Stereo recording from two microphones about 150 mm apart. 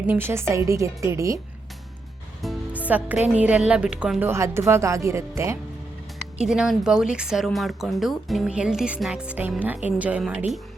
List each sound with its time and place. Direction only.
0.1 s a woman's voice: 15° right (ahead or behind)
2.7 s a woman's voice: 10° right (ahead or behind)
6.4 s speech: 5° right (ahead or behind)